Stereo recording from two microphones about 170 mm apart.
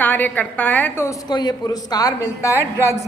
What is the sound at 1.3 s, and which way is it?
A woman's voice, 25° left (ahead or behind).